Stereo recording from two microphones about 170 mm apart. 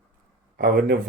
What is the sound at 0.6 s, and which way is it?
Speech, 70° right (ahead or behind).